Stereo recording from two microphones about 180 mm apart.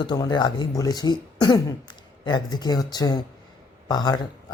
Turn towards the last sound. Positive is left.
turn(degrees=20)  # may be behind; listen again after turning